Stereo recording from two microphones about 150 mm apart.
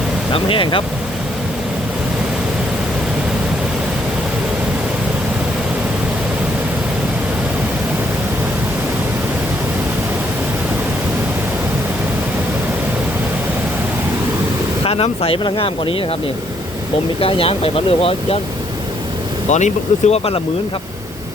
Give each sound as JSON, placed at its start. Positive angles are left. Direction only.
{"t": 0.3, "sound": "speech", "side_deg": 35}
{"t": 14.8, "sound": "speech", "side_deg": 40}
{"t": 17.2, "sound": "speech", "side_deg": 40}
{"t": 19.5, "sound": "speech", "side_deg": 50}